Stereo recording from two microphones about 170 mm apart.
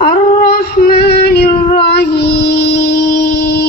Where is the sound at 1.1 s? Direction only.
75° left (ahead or behind).